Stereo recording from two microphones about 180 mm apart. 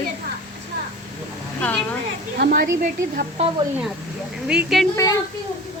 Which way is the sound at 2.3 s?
60° right (ahead or behind).